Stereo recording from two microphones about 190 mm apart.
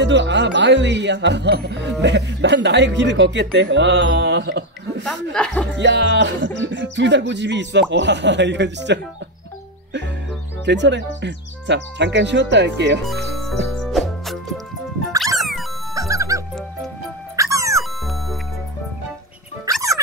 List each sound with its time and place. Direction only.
0.0 s speech: 70° right (ahead or behind)
5.0 s speech: 5° left (ahead or behind)
5.8 s music: 65° right (ahead or behind)
6.6 s speech: 65° right (ahead or behind)
10.6 s speech: 70° right (ahead or behind)
13.0 s music: centre (ahead or behind)
15.9 s music: 15° right (ahead or behind)
19.6 s music: 20° right (ahead or behind)